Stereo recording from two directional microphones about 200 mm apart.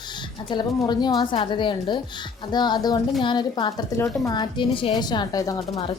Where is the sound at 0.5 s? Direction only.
20° left (ahead or behind).